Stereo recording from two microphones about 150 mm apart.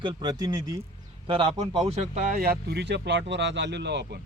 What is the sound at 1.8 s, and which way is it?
Speech, 55° right (ahead or behind).